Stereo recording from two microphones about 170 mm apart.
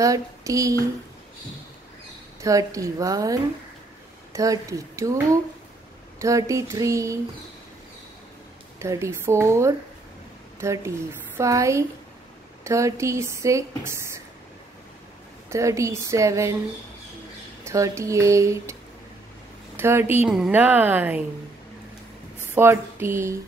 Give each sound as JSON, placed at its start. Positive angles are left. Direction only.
{"t": 0.0, "sound": "speech", "side_deg": -20}
{"t": 2.4, "sound": "speech", "side_deg": -20}
{"t": 8.7, "sound": "speech", "side_deg": -15}
{"t": 15.5, "sound": "speech", "side_deg": -15}
{"t": 17.6, "sound": "speech", "side_deg": -15}
{"t": 19.8, "sound": "speech", "side_deg": -15}
{"t": 22.5, "sound": "speech", "side_deg": -15}